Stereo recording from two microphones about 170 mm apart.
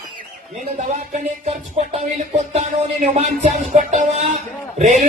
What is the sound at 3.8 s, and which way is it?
A man's voice, 45° right (ahead or behind).